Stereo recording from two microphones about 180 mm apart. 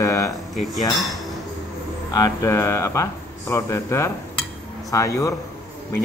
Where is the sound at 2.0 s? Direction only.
20° left (ahead or behind).